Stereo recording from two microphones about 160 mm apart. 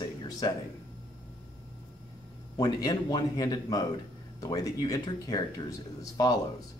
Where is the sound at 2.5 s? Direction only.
25° left (ahead or behind).